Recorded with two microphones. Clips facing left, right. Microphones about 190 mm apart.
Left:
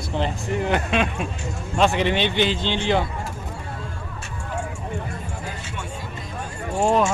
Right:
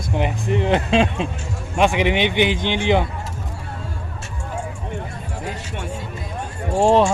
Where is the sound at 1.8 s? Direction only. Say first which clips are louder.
Right 2 dB; 15° right (ahead or behind).